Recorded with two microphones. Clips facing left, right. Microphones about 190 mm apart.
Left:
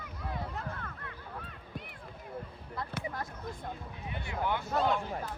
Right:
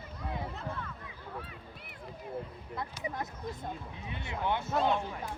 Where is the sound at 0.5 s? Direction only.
55° left (ahead or behind).